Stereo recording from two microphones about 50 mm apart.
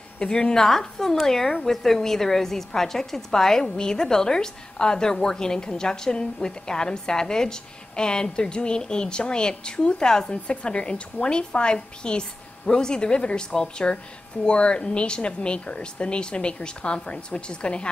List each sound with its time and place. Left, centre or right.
0.2 s a woman's voice: centre